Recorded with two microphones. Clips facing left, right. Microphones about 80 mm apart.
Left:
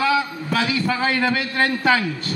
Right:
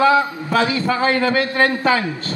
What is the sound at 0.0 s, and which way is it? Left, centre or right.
A man's voice, right.